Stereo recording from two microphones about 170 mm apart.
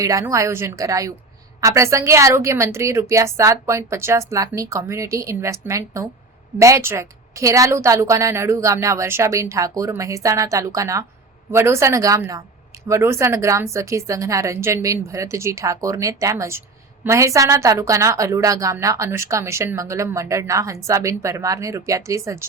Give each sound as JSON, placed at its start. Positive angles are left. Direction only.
{"t": 0.0, "sound": "a woman's voice", "side_deg": -20}